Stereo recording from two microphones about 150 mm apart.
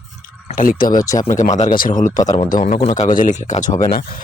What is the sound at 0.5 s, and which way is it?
Speech, 70° left (ahead or behind).